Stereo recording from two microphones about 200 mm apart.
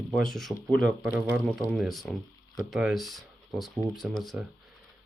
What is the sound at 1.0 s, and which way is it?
Speech, 10° right (ahead or behind).